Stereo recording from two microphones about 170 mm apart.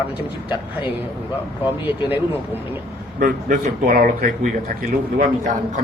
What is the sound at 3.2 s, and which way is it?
Speech, 55° right (ahead or behind).